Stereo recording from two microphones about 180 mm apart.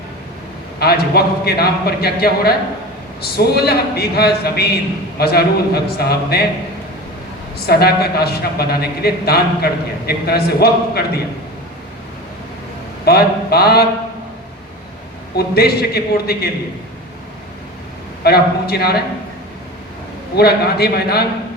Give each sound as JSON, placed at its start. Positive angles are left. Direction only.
{"t": 0.8, "sound": "a man's voice", "side_deg": 60}
{"t": 7.7, "sound": "a man's voice", "side_deg": 60}
{"t": 13.1, "sound": "a man's voice", "side_deg": 60}
{"t": 15.4, "sound": "a man's voice", "side_deg": 60}
{"t": 18.2, "sound": "a man's voice", "side_deg": 60}
{"t": 20.3, "sound": "a man's voice", "side_deg": 60}